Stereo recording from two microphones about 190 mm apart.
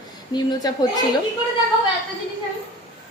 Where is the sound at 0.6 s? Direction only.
20° left (ahead or behind).